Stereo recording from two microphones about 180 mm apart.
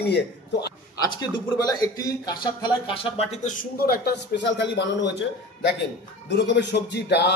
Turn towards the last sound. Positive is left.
turn(degrees=70)  # may be behind; listen again after turning